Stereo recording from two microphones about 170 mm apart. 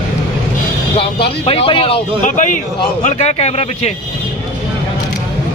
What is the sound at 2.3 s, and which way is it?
A man's voice, 50° left (ahead or behind).